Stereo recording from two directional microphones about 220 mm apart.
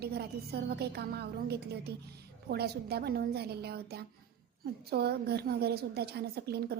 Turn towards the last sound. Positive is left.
turn(degrees=-45)  # may be behind; listen again after turning